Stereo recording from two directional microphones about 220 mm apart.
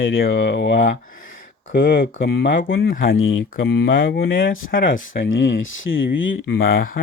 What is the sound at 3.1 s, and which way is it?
Speech, 65° left (ahead or behind).